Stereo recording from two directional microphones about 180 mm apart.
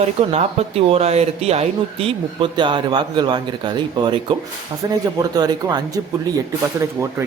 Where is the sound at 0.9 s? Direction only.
35° right (ahead or behind).